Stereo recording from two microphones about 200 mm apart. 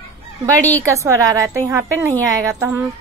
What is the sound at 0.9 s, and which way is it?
A woman's voice, 15° right (ahead or behind).